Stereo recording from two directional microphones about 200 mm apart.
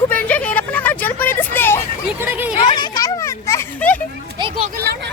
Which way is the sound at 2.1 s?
10° right (ahead or behind).